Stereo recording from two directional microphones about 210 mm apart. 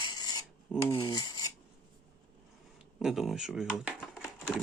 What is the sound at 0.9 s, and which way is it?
Cutlery, 20° left (ahead or behind).